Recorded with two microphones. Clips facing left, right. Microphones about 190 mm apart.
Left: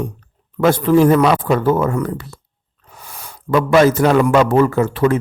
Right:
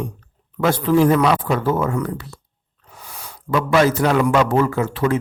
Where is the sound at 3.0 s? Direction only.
50° left (ahead or behind).